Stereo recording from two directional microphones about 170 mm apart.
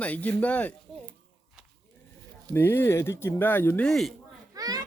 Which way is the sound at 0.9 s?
Centre (ahead or behind).